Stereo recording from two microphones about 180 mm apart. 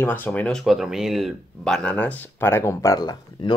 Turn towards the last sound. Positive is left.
turn(degrees=25)  # may be behind; listen again after turning